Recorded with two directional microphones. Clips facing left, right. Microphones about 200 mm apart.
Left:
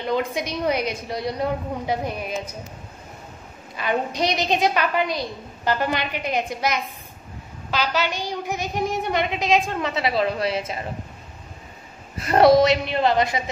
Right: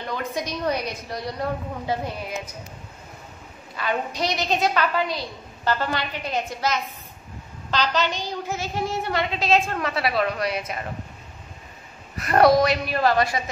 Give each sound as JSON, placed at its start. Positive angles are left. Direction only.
{"t": 0.1, "sound": "a woman's voice", "side_deg": 15}
{"t": 3.7, "sound": "a woman's voice", "side_deg": 20}
{"t": 12.2, "sound": "a woman's voice", "side_deg": 25}